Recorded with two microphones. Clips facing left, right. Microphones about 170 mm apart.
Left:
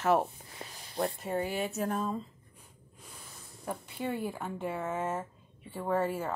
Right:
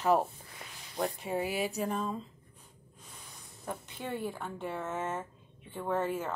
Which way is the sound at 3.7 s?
5° left (ahead or behind).